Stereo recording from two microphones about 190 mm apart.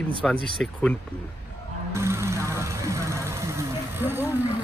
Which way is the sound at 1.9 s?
15° right (ahead or behind).